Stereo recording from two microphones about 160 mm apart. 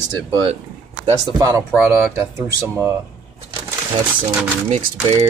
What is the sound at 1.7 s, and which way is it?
Speech, 5° right (ahead or behind).